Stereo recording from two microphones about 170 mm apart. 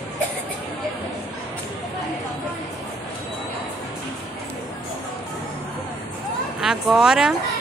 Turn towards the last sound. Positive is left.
turn(degrees=-5)  # may be behind; listen again after turning